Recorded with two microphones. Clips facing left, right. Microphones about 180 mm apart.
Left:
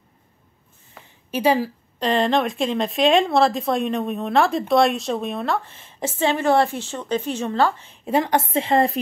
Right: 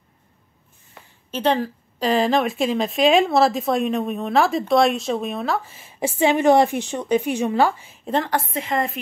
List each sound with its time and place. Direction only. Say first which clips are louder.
1.3 s speech: left 1 dB; 10° left (ahead or behind); by 8.0 s 10° right (ahead or behind)
8.0 s a woman's voice: left 2 dB; 10° left (ahead or behind)
8.3 s a woman's voice: left 4 dB; 25° left (ahead or behind)